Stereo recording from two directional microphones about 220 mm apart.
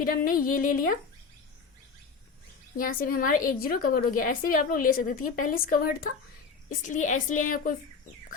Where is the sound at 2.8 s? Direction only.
40° left (ahead or behind).